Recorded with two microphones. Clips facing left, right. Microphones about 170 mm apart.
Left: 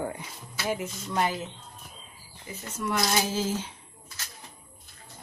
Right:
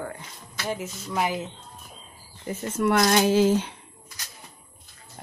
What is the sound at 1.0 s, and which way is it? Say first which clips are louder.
Speech: right 1 dB; 5° right (ahead or behind).